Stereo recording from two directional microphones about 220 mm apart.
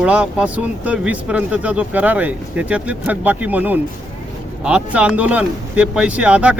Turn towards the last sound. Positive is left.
turn(degrees=-5)  # may be behind; listen again after turning